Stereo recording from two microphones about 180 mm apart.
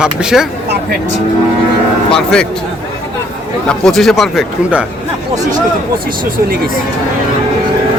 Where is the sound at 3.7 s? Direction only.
Centre (ahead or behind).